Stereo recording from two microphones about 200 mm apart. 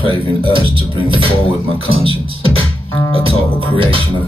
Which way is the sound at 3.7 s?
25° right (ahead or behind).